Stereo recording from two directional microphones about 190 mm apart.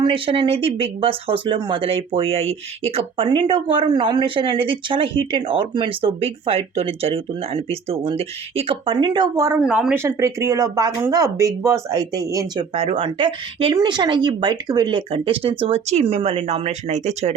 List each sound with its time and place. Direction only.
0.0 s speech: 25° right (ahead or behind)
9.6 s speech: 5° right (ahead or behind)
12.7 s speech: 30° right (ahead or behind)